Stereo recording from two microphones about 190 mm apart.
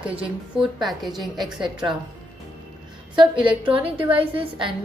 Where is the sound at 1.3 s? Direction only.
20° right (ahead or behind).